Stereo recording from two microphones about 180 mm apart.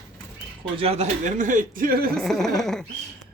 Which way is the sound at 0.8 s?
35° right (ahead or behind).